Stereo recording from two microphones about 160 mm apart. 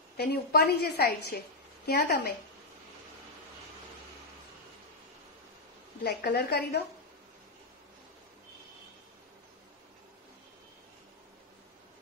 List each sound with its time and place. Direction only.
0.2 s a woman's voice: 90° left
6.0 s a woman's voice: 90° left